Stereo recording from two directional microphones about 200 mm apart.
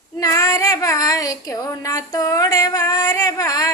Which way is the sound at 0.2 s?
15° left (ahead or behind).